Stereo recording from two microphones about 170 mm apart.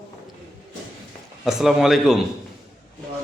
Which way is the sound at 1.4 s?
Centre (ahead or behind).